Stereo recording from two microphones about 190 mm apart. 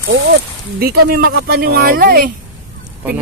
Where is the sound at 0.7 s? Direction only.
50° right (ahead or behind).